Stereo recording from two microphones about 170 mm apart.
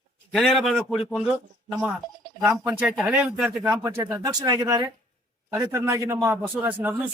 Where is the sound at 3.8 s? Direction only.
15° right (ahead or behind).